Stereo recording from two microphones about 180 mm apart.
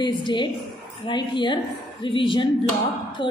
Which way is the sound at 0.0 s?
25° left (ahead or behind).